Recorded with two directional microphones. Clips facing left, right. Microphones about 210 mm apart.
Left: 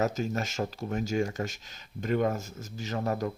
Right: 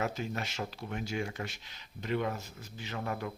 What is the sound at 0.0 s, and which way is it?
Speech, 40° left (ahead or behind).